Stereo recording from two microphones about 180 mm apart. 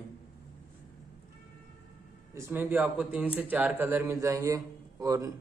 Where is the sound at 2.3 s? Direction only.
15° right (ahead or behind).